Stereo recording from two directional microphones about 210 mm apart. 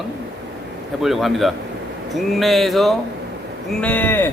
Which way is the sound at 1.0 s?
Centre (ahead or behind).